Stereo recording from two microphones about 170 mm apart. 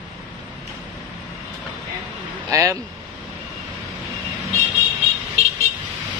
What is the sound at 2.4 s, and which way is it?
Speech, 15° right (ahead or behind).